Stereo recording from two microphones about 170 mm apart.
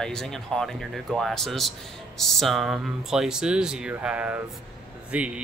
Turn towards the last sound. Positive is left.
turn(degrees=-5)  # may be behind; listen again after turning